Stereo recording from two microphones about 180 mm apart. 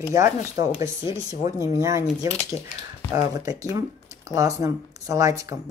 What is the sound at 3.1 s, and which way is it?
Speech, 20° right (ahead or behind).